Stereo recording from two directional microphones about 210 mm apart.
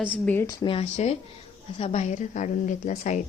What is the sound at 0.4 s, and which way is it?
Speech, 25° left (ahead or behind).